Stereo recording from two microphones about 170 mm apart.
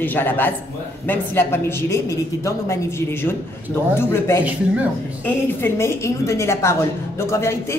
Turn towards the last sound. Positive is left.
turn(degrees=15)  # may be behind; listen again after turning